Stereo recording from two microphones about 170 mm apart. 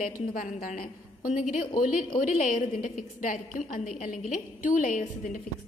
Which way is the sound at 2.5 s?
45° left (ahead or behind).